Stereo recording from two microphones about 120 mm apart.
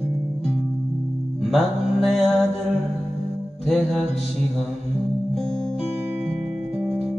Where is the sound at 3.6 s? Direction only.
Centre (ahead or behind).